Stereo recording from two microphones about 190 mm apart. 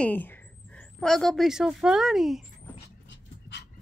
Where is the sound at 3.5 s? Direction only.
70° left (ahead or behind).